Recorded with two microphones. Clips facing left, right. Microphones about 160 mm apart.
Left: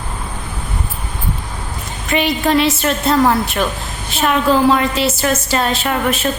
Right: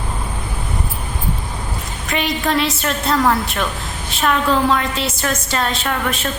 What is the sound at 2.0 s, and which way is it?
A woman's voice, centre (ahead or behind).